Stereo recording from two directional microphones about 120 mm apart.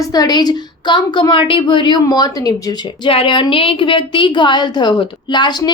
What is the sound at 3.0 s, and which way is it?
A woman's voice, 45° left (ahead or behind).